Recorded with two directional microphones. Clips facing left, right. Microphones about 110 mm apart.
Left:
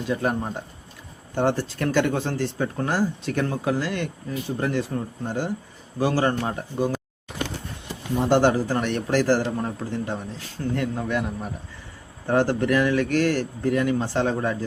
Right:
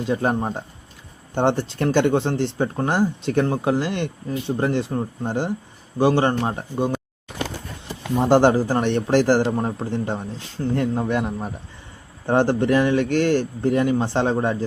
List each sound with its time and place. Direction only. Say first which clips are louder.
0.1 s speech: right 3 dB; 25° right (ahead or behind)
7.3 s a sound: right 1 dB; centre (ahead or behind)
8.1 s speech: right 3 dB; 30° right (ahead or behind)